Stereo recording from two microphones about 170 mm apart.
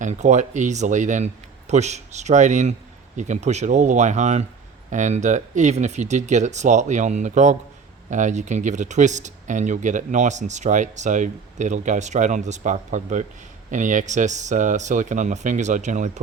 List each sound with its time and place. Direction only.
0.0 s speech: 45° right (ahead or behind)